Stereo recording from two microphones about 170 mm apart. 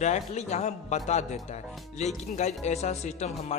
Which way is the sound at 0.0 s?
45° left (ahead or behind).